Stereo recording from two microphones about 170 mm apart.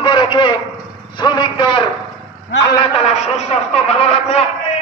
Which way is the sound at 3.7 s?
40° left (ahead or behind).